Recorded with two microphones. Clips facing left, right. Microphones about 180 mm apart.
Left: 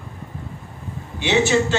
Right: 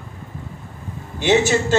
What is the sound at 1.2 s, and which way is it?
Speech, 40° right (ahead or behind).